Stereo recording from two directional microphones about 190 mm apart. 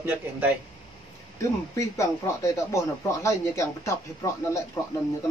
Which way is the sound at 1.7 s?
15° left (ahead or behind).